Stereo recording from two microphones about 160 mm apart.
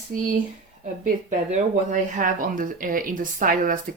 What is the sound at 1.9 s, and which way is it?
A woman's voice, 50° right (ahead or behind).